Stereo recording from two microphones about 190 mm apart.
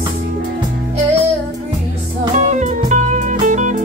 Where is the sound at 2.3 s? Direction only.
40° right (ahead or behind).